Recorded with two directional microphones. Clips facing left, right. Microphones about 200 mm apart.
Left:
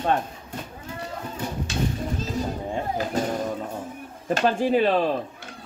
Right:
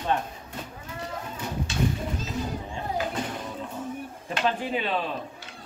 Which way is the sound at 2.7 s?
40° left (ahead or behind).